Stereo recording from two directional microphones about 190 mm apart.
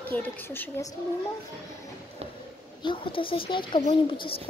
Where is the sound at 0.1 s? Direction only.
10° left (ahead or behind).